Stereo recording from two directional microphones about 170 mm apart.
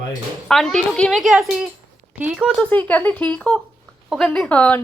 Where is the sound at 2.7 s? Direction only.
10° left (ahead or behind).